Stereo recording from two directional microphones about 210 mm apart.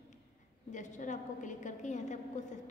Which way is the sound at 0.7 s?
35° left (ahead or behind).